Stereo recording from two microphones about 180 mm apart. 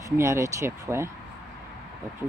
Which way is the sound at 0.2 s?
15° right (ahead or behind).